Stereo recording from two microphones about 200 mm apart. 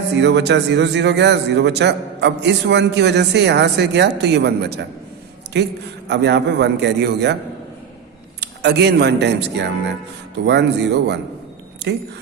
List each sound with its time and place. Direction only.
0.2 s a man's voice: 60° right (ahead or behind)
8.4 s a man's voice: 55° right (ahead or behind)